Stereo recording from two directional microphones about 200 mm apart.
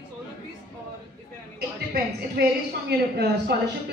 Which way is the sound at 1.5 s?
50° right (ahead or behind).